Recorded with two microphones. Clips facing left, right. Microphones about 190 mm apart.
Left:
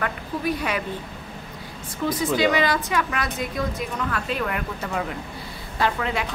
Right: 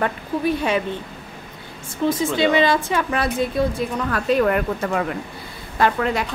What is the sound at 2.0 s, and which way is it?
A woman's voice, 25° right (ahead or behind).